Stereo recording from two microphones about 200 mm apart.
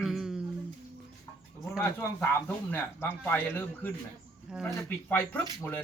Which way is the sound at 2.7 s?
10° left (ahead or behind).